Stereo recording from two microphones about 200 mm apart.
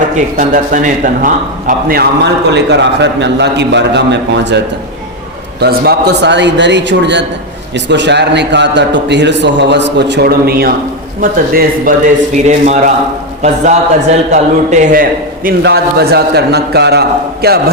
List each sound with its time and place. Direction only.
0.3 s a man's voice: 40° right (ahead or behind)
14.3 s a man's voice: 40° right (ahead or behind)
15.4 s a man's voice: 50° right (ahead or behind)